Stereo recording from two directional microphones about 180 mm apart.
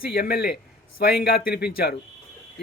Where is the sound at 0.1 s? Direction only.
60° left (ahead or behind).